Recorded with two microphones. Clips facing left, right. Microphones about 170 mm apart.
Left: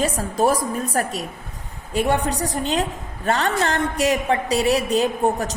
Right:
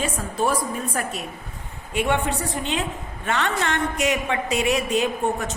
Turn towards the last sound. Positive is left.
turn(degrees=35)  # may be behind; listen again after turning